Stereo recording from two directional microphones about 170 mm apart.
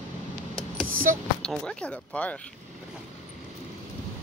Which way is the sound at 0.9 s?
55° right (ahead or behind).